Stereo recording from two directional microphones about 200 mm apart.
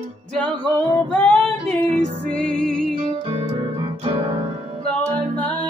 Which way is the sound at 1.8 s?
35° right (ahead or behind).